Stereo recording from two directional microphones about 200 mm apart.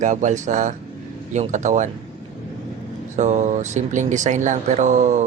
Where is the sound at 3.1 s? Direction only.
35° right (ahead or behind).